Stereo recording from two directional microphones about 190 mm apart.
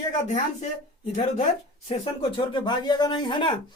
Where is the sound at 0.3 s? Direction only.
40° left (ahead or behind).